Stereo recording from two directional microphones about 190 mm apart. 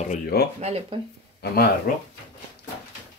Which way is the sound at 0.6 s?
35° right (ahead or behind).